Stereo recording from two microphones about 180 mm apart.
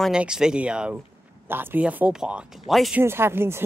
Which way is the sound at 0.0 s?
5° right (ahead or behind).